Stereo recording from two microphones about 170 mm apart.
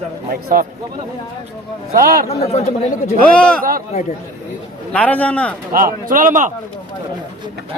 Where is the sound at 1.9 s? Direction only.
60° right (ahead or behind).